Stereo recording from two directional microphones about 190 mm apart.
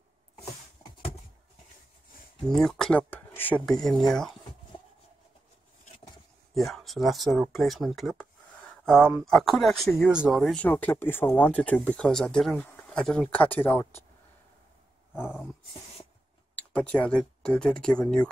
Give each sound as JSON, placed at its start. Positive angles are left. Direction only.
{"t": 2.4, "sound": "speech", "side_deg": 0}
{"t": 6.5, "sound": "speech", "side_deg": 0}
{"t": 16.5, "sound": "speech", "side_deg": 5}